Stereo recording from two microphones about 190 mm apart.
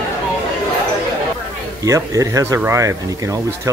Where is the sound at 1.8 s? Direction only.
15° right (ahead or behind).